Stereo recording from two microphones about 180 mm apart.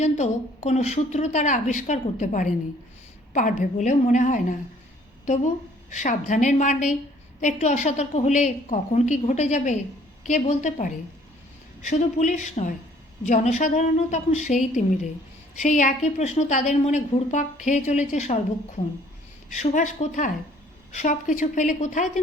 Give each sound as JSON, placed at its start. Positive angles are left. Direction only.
{"t": 0.0, "sound": "a woman's voice", "side_deg": 40}
{"t": 5.9, "sound": "a woman's voice", "side_deg": 40}
{"t": 19.5, "sound": "a woman's voice", "side_deg": 40}